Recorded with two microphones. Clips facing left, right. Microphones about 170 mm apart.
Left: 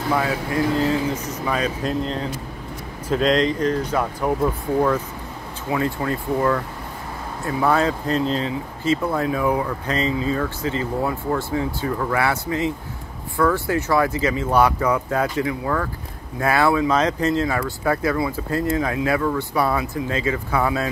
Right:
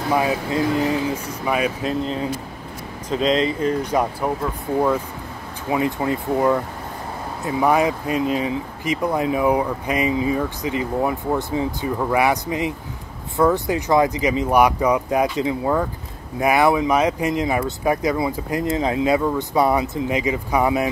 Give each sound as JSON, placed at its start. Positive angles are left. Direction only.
{"t": 0.1, "sound": "speech", "side_deg": -20}
{"t": 5.7, "sound": "speech", "side_deg": -20}